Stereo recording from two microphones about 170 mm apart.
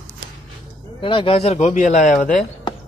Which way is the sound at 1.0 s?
30° left (ahead or behind).